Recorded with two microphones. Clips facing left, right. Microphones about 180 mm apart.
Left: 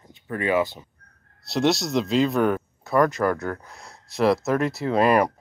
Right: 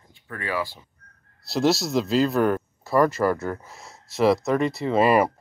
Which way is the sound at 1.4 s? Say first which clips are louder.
Even; centre (ahead or behind).